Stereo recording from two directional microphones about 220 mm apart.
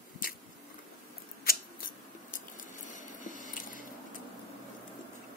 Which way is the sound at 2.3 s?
35° left (ahead or behind).